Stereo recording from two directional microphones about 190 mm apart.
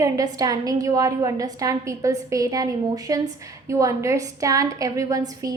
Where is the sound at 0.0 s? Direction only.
20° right (ahead or behind).